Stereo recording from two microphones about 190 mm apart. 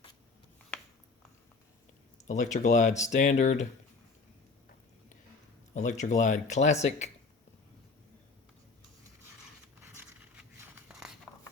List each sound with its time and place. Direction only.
2.2 s speech: 40° left (ahead or behind)
5.7 s speech: 40° left (ahead or behind)
9.8 s a sound: 15° right (ahead or behind)